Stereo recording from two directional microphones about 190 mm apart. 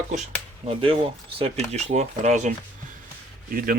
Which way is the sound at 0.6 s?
30° right (ahead or behind).